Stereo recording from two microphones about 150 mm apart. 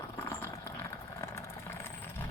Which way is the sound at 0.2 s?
15° left (ahead or behind).